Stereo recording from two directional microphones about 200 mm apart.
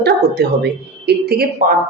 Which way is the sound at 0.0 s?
55° right (ahead or behind).